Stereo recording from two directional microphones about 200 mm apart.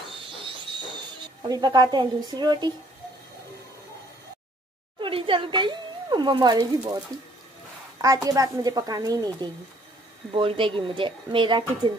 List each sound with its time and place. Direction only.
1.5 s speech: 20° right (ahead or behind)
5.0 s a sound: 25° right (ahead or behind)
8.0 s a child's voice: 15° right (ahead or behind)